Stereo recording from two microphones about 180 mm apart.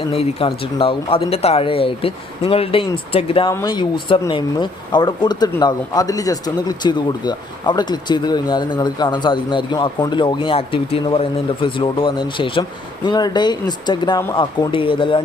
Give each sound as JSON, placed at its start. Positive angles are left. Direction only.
{"t": 0.1, "sound": "speech", "side_deg": 35}